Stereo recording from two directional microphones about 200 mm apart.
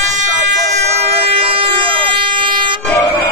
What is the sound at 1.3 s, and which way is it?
Vehicle, 25° right (ahead or behind).